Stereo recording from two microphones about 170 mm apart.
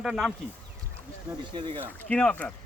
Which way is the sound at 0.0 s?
Centre (ahead or behind).